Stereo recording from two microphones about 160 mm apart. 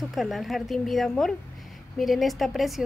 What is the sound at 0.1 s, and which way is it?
A woman's voice, centre (ahead or behind).